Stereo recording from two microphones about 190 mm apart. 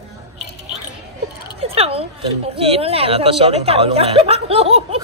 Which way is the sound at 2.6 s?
30° right (ahead or behind).